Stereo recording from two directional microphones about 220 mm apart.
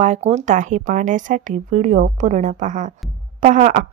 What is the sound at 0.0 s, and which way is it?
Speech, 30° right (ahead or behind).